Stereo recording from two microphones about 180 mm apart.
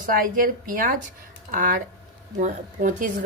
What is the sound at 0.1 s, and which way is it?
Speech, 50° right (ahead or behind).